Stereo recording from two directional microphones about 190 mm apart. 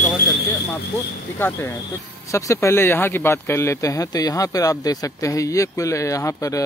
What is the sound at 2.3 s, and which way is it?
Speech, 15° left (ahead or behind).